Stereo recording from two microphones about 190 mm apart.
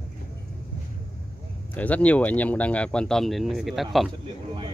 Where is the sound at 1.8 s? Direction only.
5° left (ahead or behind).